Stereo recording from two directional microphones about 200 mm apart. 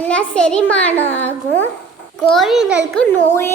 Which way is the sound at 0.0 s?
5° left (ahead or behind).